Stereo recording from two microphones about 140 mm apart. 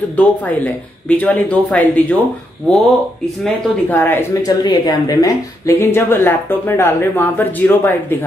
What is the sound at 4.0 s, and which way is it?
Speech, 15° left (ahead or behind).